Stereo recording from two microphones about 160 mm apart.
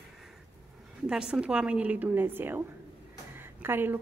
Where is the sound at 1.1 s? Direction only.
5° right (ahead or behind).